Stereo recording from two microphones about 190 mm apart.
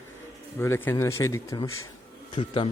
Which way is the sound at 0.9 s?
15° left (ahead or behind).